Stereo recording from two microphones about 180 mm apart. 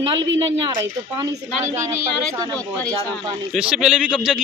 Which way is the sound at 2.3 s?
20° right (ahead or behind).